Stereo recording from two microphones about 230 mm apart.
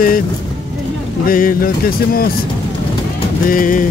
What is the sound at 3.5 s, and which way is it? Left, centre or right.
Speech, left.